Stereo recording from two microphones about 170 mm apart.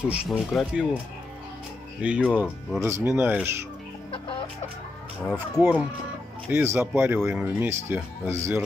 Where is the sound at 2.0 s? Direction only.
5° right (ahead or behind).